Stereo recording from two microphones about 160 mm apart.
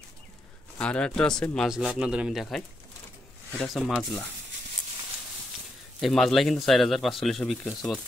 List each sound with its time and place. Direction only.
0.7 s speech: 5° left (ahead or behind)
1.8 s speech: 5° right (ahead or behind)
5.9 s speech: centre (ahead or behind)